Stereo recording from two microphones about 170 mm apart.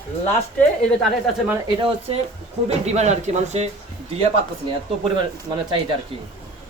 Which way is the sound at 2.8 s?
40° right (ahead or behind).